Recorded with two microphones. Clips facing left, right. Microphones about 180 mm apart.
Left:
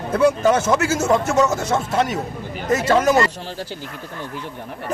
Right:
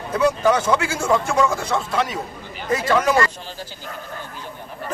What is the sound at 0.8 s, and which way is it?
Speech, 45° left (ahead or behind).